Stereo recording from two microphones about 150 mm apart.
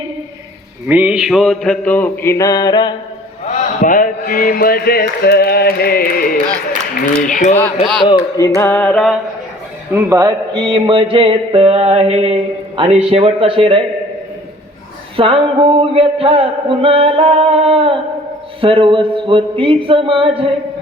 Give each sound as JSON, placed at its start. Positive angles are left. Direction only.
{"t": 0.9, "sound": "mantra", "side_deg": -10}
{"t": 3.8, "sound": "a sound", "side_deg": 60}
{"t": 7.3, "sound": "speech", "side_deg": 60}
{"t": 8.0, "sound": "mantra", "side_deg": 20}
{"t": 9.9, "sound": "speech", "side_deg": -20}
{"t": 15.1, "sound": "speech", "side_deg": -40}